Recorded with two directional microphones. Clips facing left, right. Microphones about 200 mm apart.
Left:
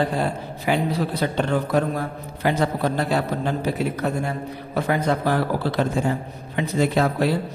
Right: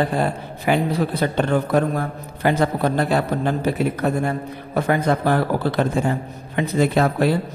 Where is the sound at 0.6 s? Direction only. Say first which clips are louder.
Right 3 dB; 50° right (ahead or behind).